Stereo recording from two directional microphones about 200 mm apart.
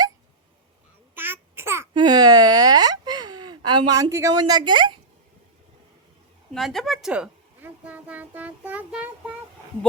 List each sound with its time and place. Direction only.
1.1 s babbling: 10° right (ahead or behind)
1.9 s a sound: 20° right (ahead or behind)
6.5 s a woman's voice: centre (ahead or behind)